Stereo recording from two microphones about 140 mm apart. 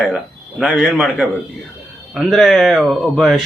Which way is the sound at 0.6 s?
5° right (ahead or behind).